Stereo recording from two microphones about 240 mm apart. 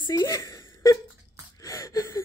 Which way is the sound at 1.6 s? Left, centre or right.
Centre.